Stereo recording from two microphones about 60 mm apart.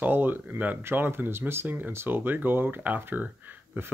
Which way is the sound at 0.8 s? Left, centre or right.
Right.